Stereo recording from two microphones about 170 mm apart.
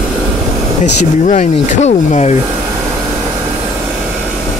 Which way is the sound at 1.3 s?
45° left (ahead or behind).